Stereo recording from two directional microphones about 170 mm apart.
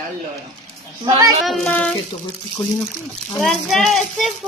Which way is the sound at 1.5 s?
5° left (ahead or behind).